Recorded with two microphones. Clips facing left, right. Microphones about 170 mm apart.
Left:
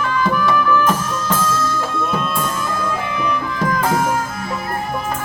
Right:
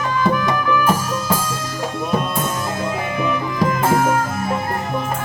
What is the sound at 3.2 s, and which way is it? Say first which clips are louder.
Music: right 2 dB; 25° right (ahead or behind).